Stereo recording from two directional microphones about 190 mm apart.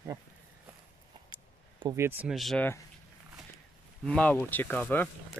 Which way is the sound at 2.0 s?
10° right (ahead or behind).